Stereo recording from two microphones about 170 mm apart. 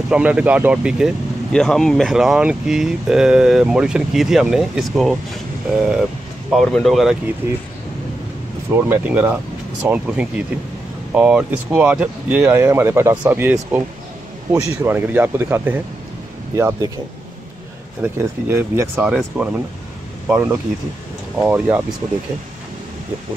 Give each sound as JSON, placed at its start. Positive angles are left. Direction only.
{"t": 0.1, "sound": "speech", "side_deg": -5}
{"t": 7.4, "sound": "speech", "side_deg": -15}
{"t": 8.6, "sound": "speech", "side_deg": -15}
{"t": 18.0, "sound": "speech", "side_deg": -10}